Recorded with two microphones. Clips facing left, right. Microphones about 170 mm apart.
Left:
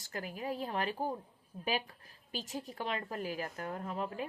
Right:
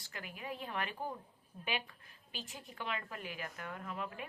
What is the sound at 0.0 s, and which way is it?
A woman's voice, 40° left (ahead or behind).